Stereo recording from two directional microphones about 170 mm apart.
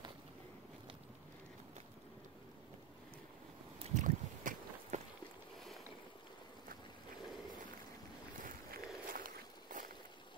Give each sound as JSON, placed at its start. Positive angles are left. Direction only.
{"t": 3.8, "sound": "boat", "side_deg": -45}
{"t": 8.4, "sound": "walk", "side_deg": -55}